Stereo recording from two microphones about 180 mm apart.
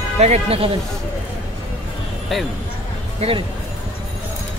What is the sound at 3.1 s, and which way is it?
Speech, 30° right (ahead or behind).